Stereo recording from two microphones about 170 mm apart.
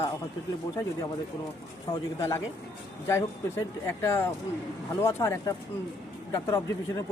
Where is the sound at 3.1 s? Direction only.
15° left (ahead or behind).